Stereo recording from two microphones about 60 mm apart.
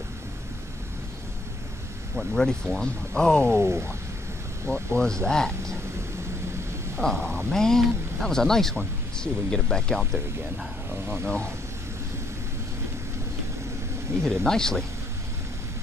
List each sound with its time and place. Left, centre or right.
2.1 s speech: centre
3.5 s speech: right
4.6 s speech: left
5.0 s speech: centre
7.0 s speech: centre
10.9 s speech: right
11.2 s speech: centre
14.4 s speech: centre